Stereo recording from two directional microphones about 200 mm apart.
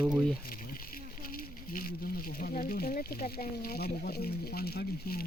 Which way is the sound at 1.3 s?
45° left (ahead or behind).